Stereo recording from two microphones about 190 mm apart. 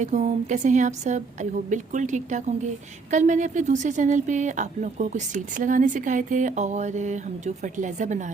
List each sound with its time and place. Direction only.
0.0 s a woman's voice: 35° right (ahead or behind)